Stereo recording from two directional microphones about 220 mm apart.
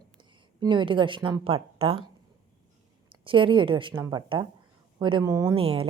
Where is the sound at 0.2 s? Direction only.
20° right (ahead or behind).